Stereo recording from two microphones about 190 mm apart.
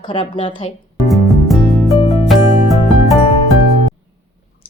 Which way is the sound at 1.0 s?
Centre (ahead or behind).